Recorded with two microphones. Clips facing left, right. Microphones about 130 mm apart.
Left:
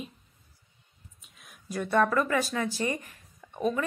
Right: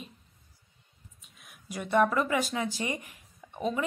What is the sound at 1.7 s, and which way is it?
A woman's voice, 15° right (ahead or behind).